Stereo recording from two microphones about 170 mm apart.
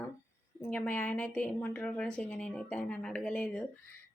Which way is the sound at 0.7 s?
10° left (ahead or behind).